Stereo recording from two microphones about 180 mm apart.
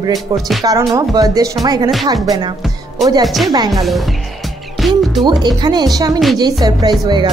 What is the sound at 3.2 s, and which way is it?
Speech, centre (ahead or behind).